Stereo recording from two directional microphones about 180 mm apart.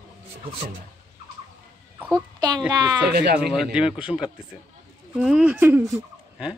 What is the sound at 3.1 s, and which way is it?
Speech, 60° right (ahead or behind).